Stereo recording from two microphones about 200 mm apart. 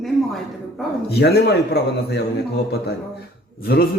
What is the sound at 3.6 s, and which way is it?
Speech, 50° left (ahead or behind).